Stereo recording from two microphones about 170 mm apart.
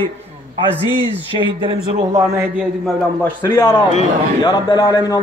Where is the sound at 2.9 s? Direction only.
10° left (ahead or behind).